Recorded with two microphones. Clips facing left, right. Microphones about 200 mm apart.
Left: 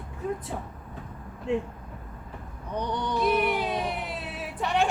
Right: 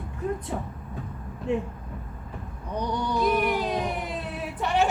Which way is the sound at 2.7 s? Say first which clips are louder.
Right 1 dB; 10° right (ahead or behind).